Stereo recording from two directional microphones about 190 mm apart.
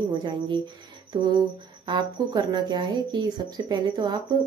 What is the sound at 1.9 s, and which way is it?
Speech, 25° right (ahead or behind).